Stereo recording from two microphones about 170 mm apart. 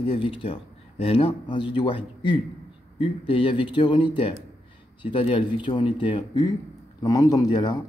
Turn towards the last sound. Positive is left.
turn(degrees=25)  # may be behind; listen again after turning